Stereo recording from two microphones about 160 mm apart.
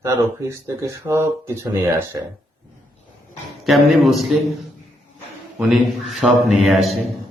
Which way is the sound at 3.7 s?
Centre (ahead or behind).